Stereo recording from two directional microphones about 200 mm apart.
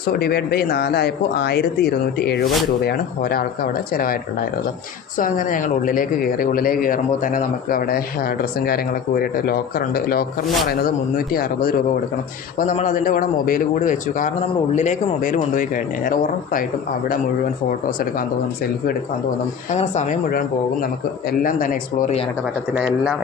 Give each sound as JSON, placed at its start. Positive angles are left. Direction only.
{"t": 0.0, "sound": "speech", "side_deg": 50}
{"t": 10.4, "sound": "a man's voice", "side_deg": 0}
{"t": 12.5, "sound": "a man's voice", "side_deg": 40}
{"t": 17.7, "sound": "speech", "side_deg": 45}
{"t": 19.7, "sound": "a man's voice", "side_deg": 35}
{"t": 22.7, "sound": "a man's voice", "side_deg": -5}